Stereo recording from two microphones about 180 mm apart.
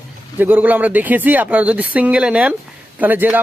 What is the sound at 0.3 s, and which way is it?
Speech, 10° right (ahead or behind).